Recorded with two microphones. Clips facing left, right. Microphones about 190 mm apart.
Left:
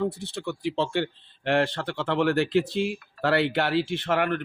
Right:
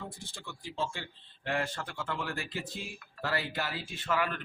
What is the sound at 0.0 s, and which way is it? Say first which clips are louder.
A man's voice: left 16 dB; 65° left (ahead or behind).